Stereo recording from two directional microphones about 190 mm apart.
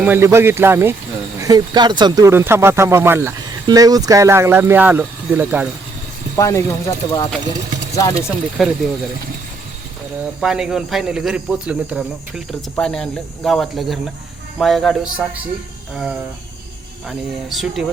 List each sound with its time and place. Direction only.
0.0 s speech: 10° right (ahead or behind)
6.3 s speech: 15° left (ahead or behind)
8.1 s speech: 5° right (ahead or behind)
10.4 s speech: 5° right (ahead or behind)
17.1 s speech: centre (ahead or behind)